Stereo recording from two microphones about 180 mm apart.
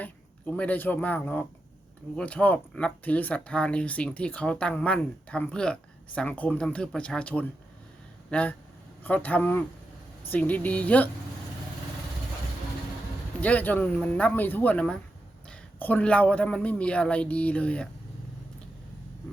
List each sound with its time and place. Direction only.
0.0 s speech: 10° left (ahead or behind)
13.4 s speech: 10° left (ahead or behind)